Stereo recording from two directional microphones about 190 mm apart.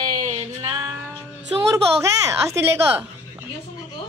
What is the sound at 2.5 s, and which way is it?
Speech, 15° right (ahead or behind).